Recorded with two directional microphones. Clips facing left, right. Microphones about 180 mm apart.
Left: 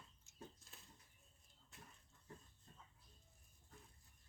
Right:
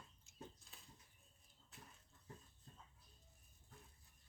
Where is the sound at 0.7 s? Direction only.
Centre (ahead or behind).